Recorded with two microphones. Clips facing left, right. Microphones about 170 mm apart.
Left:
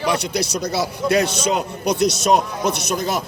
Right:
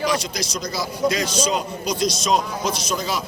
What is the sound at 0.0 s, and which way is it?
A man's voice, 60° left (ahead or behind).